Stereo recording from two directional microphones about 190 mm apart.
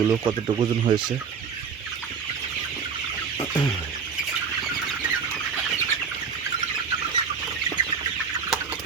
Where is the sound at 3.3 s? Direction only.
15° left (ahead or behind).